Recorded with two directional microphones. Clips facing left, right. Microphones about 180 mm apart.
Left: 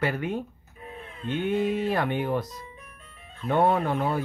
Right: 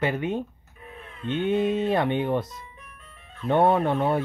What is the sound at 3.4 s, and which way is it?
Speech, 25° right (ahead or behind).